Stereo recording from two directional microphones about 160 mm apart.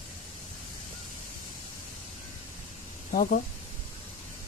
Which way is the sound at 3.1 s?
60° left (ahead or behind).